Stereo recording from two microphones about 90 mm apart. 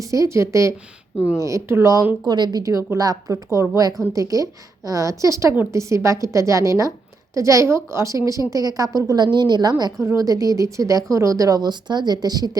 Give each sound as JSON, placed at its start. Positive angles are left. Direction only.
{"t": 0.0, "sound": "a woman's voice", "side_deg": -35}
{"t": 2.2, "sound": "a woman's voice", "side_deg": -50}
{"t": 9.2, "sound": "a woman's voice", "side_deg": -55}
{"t": 10.0, "sound": "a woman's voice", "side_deg": -35}